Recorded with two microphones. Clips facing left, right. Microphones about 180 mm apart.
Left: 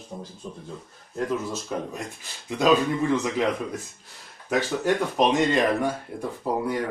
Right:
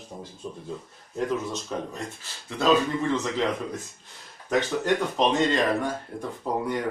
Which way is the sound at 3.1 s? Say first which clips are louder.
Left 2 dB; 10° left (ahead or behind).